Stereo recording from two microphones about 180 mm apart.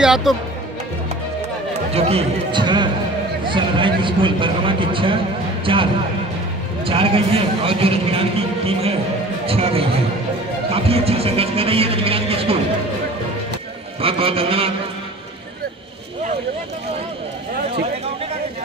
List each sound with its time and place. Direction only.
0.0 s speech: centre (ahead or behind)
2.0 s a man's voice: 35° right (ahead or behind)
14.0 s a man's voice: 30° right (ahead or behind)